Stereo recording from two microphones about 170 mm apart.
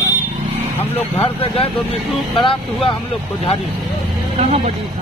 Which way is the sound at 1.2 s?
35° left (ahead or behind).